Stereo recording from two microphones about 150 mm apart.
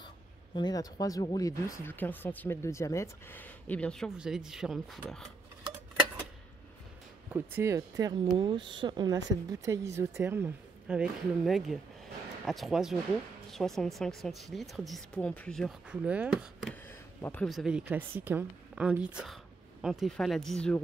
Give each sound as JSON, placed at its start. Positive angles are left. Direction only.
{"t": 0.6, "sound": "speech", "side_deg": 25}
{"t": 4.2, "sound": "speech", "side_deg": -5}
{"t": 7.3, "sound": "speech", "side_deg": -15}
{"t": 15.9, "sound": "a woman's voice", "side_deg": -10}
{"t": 17.2, "sound": "speech", "side_deg": 15}
{"t": 17.5, "sound": "a woman's voice", "side_deg": -5}